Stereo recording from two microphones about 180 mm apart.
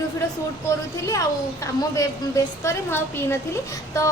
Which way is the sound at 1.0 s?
15° left (ahead or behind).